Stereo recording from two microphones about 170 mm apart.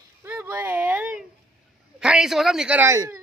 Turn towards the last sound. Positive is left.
turn(degrees=-15)  # may be behind; listen again after turning